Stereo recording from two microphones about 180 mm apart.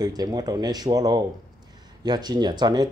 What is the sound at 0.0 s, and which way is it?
Speech, 20° right (ahead or behind).